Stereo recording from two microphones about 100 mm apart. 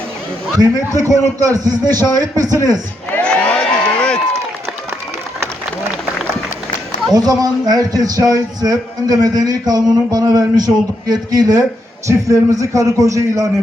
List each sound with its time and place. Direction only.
0.6 s speech: 35° right (ahead or behind)
3.1 s crowd: 15° left (ahead or behind)
7.1 s speech: 40° right (ahead or behind)